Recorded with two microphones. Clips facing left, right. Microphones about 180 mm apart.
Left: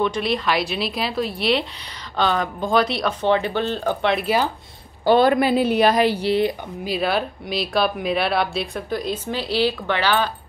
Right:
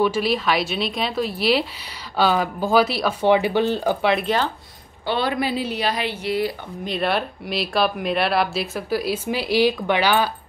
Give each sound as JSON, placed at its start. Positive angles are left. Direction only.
{"t": 0.0, "sound": "speech", "side_deg": -5}
{"t": 4.0, "sound": "speech", "side_deg": 0}
{"t": 5.0, "sound": "speech", "side_deg": 45}
{"t": 6.8, "sound": "speech", "side_deg": 5}